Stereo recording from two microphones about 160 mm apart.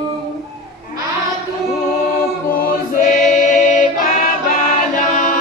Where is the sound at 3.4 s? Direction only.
50° left (ahead or behind).